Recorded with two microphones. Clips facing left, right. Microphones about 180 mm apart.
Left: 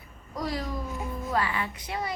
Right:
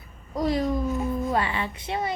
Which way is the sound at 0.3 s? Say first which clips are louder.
Right 8 dB; 20° right (ahead or behind).